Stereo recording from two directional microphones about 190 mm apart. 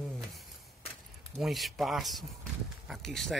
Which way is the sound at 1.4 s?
Centre (ahead or behind).